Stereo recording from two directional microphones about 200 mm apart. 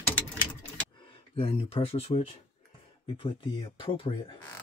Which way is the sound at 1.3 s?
30° left (ahead or behind).